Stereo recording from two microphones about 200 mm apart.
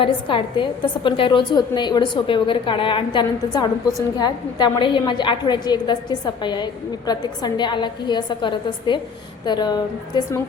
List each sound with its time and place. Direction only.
0.0 s a woman's voice: 25° left (ahead or behind)